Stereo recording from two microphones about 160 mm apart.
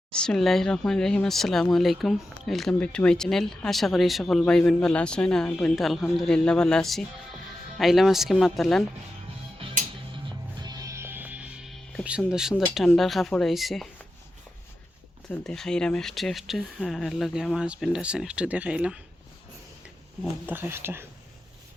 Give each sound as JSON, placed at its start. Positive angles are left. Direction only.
{"t": 0.1, "sound": "speech", "side_deg": 5}
{"t": 10.6, "sound": "music", "side_deg": -25}
{"t": 12.0, "sound": "speech", "side_deg": -5}
{"t": 15.3, "sound": "speech", "side_deg": 5}
{"t": 20.5, "sound": "speech", "side_deg": -15}